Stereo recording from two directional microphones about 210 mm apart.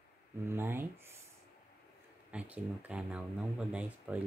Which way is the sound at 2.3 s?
5° right (ahead or behind).